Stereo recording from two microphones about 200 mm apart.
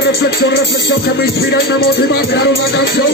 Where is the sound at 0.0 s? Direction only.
55° left (ahead or behind).